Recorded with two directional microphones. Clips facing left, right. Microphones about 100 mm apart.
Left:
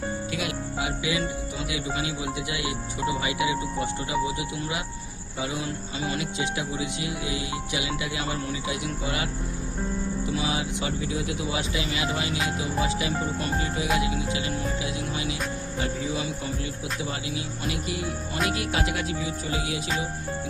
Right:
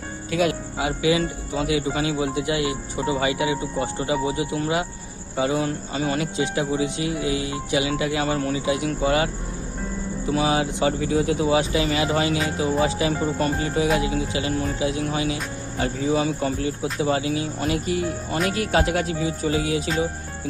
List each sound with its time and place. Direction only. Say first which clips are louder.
0.3 s speech: right 7 dB; 40° right (ahead or behind)
10.3 s speech: right 11 dB; 45° right (ahead or behind)